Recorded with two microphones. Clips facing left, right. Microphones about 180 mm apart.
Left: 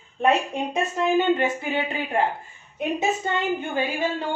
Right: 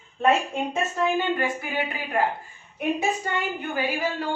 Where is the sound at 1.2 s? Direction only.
25° left (ahead or behind).